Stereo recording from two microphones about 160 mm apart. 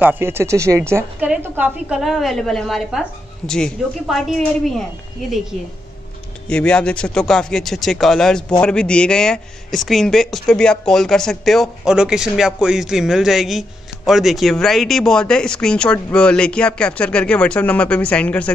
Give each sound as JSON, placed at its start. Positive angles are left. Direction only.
{"t": 0.0, "sound": "a woman's voice", "side_deg": -15}
{"t": 6.5, "sound": "speech", "side_deg": 5}